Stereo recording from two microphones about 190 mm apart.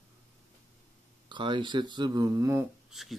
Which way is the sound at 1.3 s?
25° right (ahead or behind).